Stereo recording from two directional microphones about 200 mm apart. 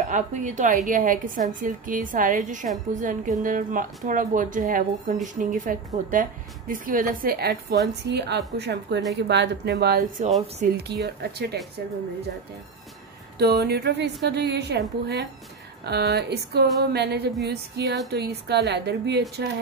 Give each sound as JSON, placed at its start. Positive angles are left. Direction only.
{"t": 0.1, "sound": "a woman's voice", "side_deg": -40}
{"t": 13.4, "sound": "speech", "side_deg": -55}